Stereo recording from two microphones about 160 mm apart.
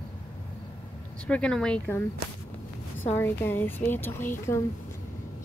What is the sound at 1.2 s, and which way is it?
Speech, 5° left (ahead or behind).